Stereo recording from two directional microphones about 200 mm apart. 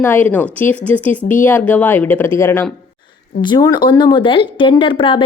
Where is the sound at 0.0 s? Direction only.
10° left (ahead or behind).